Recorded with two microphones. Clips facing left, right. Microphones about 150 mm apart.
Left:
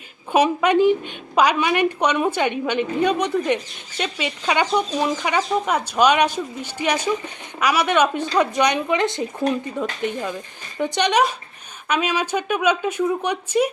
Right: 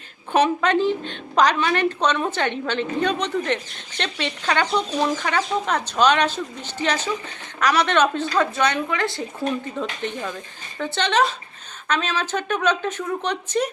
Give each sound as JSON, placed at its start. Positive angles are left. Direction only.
{"t": 0.3, "sound": "a woman's voice", "side_deg": 10}